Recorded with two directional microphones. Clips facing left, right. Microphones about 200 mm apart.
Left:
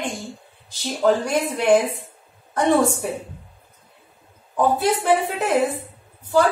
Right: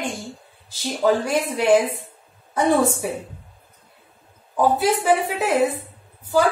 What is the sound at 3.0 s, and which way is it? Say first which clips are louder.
Speech: even; 5° right (ahead or behind).